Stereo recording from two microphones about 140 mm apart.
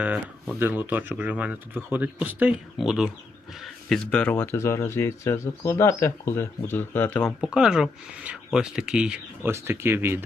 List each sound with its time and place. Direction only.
0.6 s speech: 15° right (ahead or behind); by 7.3 s 15° left (ahead or behind)
7.3 s speech: 5° right (ahead or behind)
9.5 s speech: 15° right (ahead or behind)